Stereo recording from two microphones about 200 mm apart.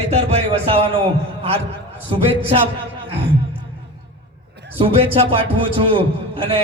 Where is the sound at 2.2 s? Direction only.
30° right (ahead or behind).